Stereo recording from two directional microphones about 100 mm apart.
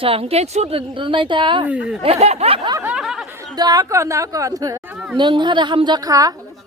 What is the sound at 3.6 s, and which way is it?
A woman's voice, 40° right (ahead or behind).